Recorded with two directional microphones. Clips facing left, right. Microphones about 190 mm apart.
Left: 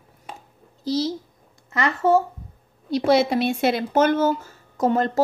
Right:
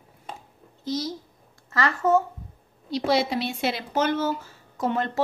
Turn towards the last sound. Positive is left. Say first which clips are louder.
# left 5 dB
turn(degrees=40)  # may be behind; listen again after turning